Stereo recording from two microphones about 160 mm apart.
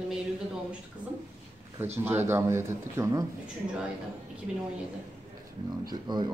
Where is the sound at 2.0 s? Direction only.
15° right (ahead or behind).